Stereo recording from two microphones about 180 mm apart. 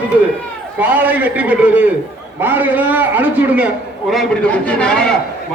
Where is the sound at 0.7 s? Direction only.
10° right (ahead or behind).